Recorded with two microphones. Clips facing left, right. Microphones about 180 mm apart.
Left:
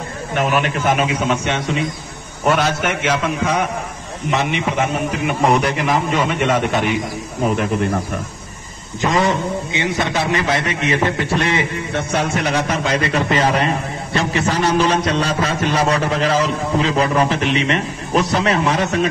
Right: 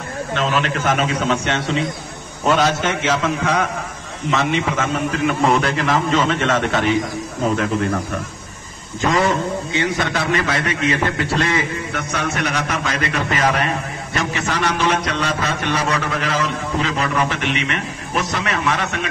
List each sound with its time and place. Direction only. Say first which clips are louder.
0.3 s a man's voice: left 2 dB; 15° left (ahead or behind)
9.7 s a man's voice: even; 20° left (ahead or behind); by 19.0 s 35° left (ahead or behind)